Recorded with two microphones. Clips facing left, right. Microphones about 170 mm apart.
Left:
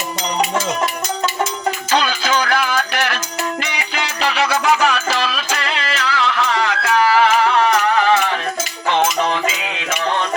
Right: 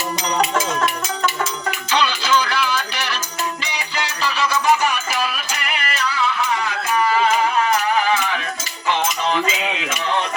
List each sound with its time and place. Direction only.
1.9 s music: 45° left (ahead or behind); by 7.8 s 80° left